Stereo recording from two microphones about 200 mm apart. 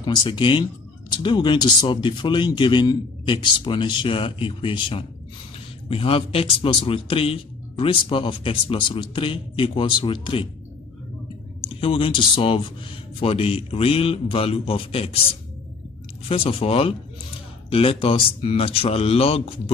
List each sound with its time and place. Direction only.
0.0 s speech: 20° left (ahead or behind)
11.6 s speech: 30° left (ahead or behind)
16.3 s speech: 30° left (ahead or behind)